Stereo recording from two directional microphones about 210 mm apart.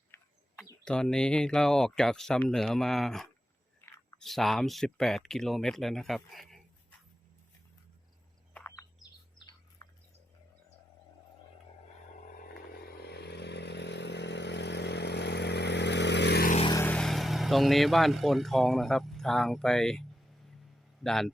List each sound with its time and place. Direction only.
0.1 s speech: 10° left (ahead or behind)
8.5 s a sound: 10° left (ahead or behind)
12.4 s vehicle: 45° left (ahead or behind)
16.6 s a man's voice: 10° left (ahead or behind)